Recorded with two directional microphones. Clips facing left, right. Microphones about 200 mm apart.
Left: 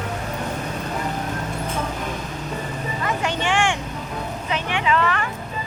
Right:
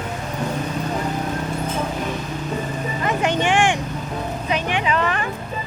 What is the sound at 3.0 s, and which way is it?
Vehicle, 20° right (ahead or behind).